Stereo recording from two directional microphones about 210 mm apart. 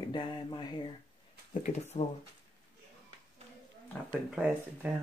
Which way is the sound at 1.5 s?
35° left (ahead or behind).